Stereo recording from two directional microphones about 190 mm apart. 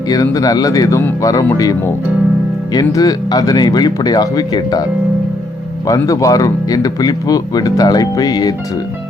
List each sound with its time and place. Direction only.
0.1 s speech: 20° left (ahead or behind)
2.7 s speech: 20° left (ahead or behind)
5.9 s speech: 15° left (ahead or behind)